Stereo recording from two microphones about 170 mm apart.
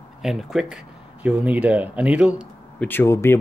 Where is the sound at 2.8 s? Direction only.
10° left (ahead or behind).